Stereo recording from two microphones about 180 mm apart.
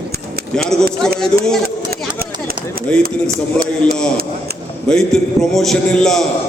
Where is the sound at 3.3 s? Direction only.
55° right (ahead or behind).